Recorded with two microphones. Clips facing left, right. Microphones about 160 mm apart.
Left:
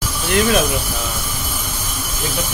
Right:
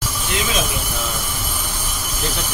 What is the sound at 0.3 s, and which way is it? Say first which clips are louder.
Speech: left 8 dB; 60° left (ahead or behind).